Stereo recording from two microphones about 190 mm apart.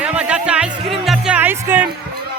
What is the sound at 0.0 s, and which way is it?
Music, 5° right (ahead or behind).